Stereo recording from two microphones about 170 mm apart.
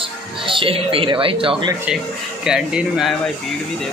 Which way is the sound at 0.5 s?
30° right (ahead or behind).